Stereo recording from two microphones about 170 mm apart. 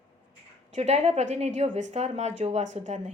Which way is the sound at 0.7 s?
40° right (ahead or behind).